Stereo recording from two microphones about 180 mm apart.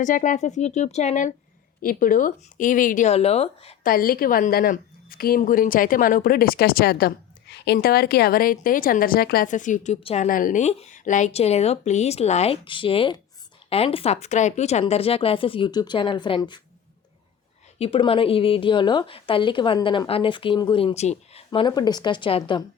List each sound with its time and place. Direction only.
0.0 s a woman's voice: 45° left (ahead or behind)
3.8 s a woman's voice: 55° left (ahead or behind); by 10.2 s 35° left (ahead or behind)
10.2 s speech: 50° left (ahead or behind); by 16.6 s 25° left (ahead or behind)
17.7 s a woman's voice: 30° left (ahead or behind)